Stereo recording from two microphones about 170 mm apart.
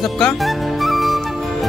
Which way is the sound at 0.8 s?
Centre (ahead or behind).